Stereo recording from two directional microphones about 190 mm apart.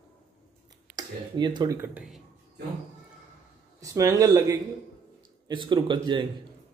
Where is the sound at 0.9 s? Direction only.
25° right (ahead or behind).